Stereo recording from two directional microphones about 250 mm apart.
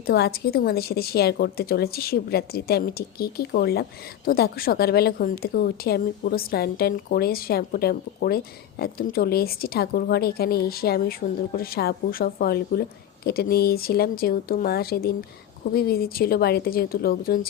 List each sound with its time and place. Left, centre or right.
0.1 s a woman's voice: left